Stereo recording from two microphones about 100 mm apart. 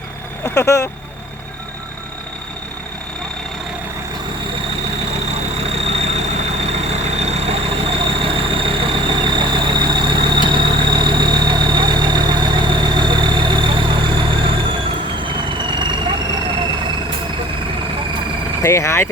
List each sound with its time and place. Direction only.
0.4 s speech: 30° left (ahead or behind)
5.3 s vehicle: 90° right; by 16.1 s 50° right (ahead or behind)
18.6 s vehicle: 30° left (ahead or behind)